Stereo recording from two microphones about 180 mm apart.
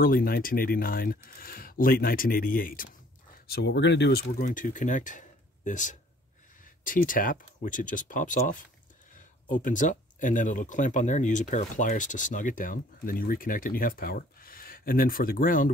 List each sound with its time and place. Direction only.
0.0 s speech: 55° left (ahead or behind)
3.4 s speech: 65° left (ahead or behind); by 15.7 s 50° left (ahead or behind)